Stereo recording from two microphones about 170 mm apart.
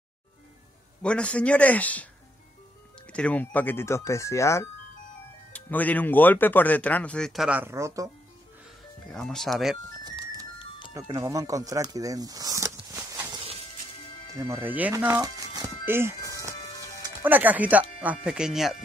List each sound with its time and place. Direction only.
1.0 s speech: 5° left (ahead or behind)
3.1 s speech: 5° left (ahead or behind); by 8.1 s 20° right (ahead or behind)
9.1 s speech: 5° left (ahead or behind)
10.9 s speech: 20° right (ahead or behind); by 18.8 s centre (ahead or behind)